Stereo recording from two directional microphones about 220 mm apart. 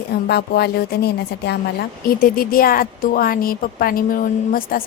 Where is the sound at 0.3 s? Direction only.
45° left (ahead or behind).